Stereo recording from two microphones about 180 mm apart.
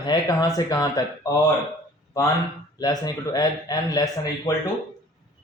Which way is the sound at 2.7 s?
20° left (ahead or behind).